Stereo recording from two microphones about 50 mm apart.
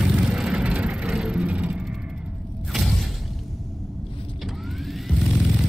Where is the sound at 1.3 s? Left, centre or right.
Right.